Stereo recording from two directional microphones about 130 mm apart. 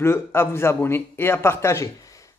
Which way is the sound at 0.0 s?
20° left (ahead or behind).